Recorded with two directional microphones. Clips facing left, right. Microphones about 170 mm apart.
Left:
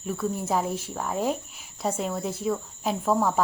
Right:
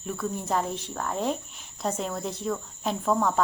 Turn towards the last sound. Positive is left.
turn(degrees=5)  # may be behind; listen again after turning